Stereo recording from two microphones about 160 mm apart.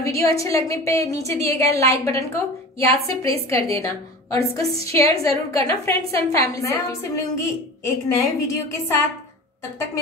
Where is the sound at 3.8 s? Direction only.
20° left (ahead or behind).